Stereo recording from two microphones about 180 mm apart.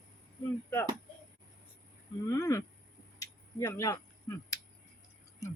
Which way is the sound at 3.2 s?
20° left (ahead or behind).